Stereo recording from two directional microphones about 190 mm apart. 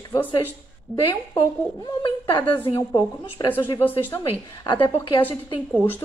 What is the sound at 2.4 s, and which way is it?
A woman's voice, 15° left (ahead or behind).